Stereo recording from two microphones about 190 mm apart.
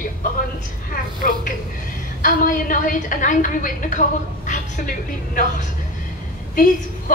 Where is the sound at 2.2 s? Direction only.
45° left (ahead or behind).